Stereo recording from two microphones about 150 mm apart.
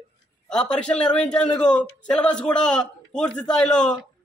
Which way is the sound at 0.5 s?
5° left (ahead or behind).